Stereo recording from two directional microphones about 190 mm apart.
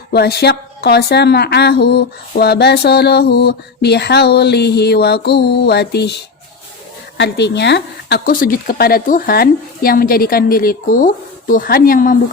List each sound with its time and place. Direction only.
0.1 s a woman's voice: 60° left (ahead or behind)
7.2 s speech: 65° left (ahead or behind); by 12.1 s 45° left (ahead or behind)